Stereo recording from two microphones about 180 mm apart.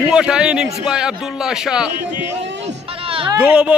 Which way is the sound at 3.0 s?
30° right (ahead or behind).